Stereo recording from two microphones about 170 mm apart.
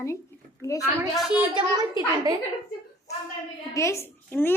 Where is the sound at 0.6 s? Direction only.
20° left (ahead or behind).